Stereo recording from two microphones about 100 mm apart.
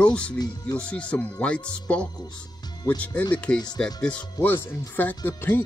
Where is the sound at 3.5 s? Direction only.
45° left (ahead or behind).